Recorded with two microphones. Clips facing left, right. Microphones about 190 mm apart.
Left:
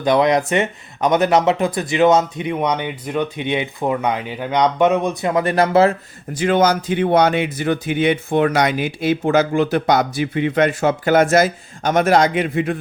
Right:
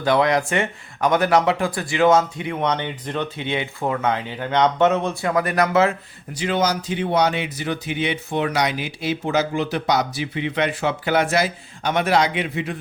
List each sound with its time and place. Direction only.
0.0 s speech: 20° left (ahead or behind)
6.3 s speech: 50° left (ahead or behind)